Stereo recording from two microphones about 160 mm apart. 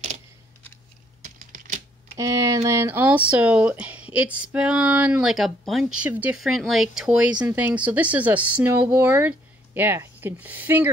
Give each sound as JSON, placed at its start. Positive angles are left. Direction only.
{"t": 1.2, "sound": "typing", "side_deg": -50}
{"t": 2.1, "sound": "speech", "side_deg": -20}